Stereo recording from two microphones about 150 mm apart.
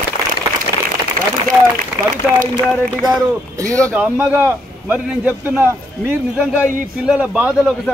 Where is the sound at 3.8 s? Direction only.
10° right (ahead or behind).